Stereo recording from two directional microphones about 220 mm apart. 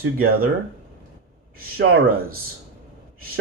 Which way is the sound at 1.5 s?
40° right (ahead or behind).